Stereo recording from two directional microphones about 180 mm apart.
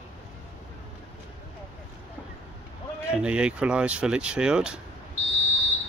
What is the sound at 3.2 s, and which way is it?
Speech, 5° right (ahead or behind).